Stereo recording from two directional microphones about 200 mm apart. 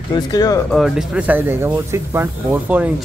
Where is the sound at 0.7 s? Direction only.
Centre (ahead or behind).